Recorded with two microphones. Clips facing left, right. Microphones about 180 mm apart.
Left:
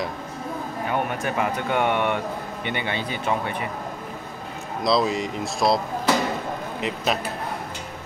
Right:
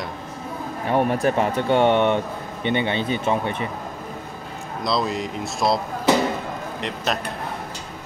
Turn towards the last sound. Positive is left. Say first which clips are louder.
# left 1 dB
turn(degrees=5)  # may be behind; listen again after turning